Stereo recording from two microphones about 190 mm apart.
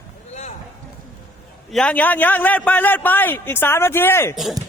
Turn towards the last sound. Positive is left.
turn(degrees=10)  # may be behind; listen again after turning